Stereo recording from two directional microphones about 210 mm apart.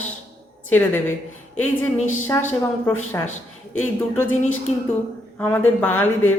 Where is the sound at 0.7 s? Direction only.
10° left (ahead or behind).